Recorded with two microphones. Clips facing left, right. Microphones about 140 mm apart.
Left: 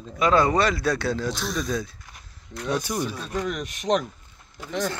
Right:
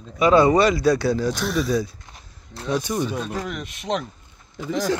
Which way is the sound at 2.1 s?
30° right (ahead or behind).